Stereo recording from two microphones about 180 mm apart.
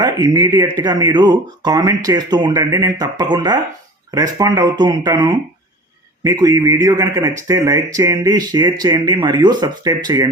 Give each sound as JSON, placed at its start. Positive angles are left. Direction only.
{"t": 0.0, "sound": "a man's voice", "side_deg": -20}